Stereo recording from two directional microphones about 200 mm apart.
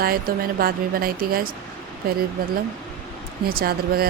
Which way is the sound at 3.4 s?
50° right (ahead or behind).